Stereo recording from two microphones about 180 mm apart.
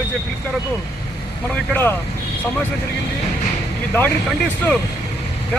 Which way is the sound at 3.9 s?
10° left (ahead or behind).